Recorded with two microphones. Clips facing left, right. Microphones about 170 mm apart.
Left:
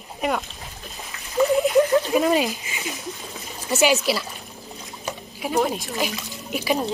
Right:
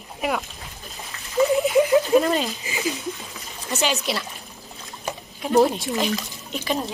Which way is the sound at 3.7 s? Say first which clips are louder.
Left 5 dB; centre (ahead or behind).